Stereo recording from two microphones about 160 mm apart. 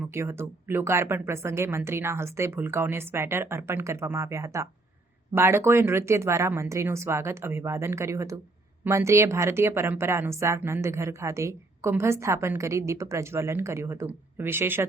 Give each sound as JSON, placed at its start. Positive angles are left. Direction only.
{"t": 0.1, "sound": "a woman's voice", "side_deg": -15}